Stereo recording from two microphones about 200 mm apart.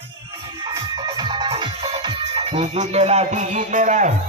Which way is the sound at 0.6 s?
20° right (ahead or behind).